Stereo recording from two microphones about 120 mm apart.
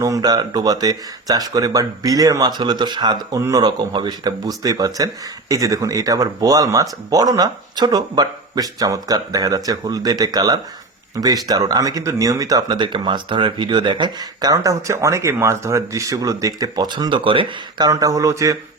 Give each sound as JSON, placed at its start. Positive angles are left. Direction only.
{"t": 0.0, "sound": "speech", "side_deg": -30}
{"t": 17.8, "sound": "speech", "side_deg": -30}